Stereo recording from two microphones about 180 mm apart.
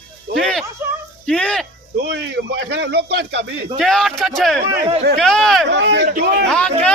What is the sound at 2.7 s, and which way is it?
Speech, 70° right (ahead or behind).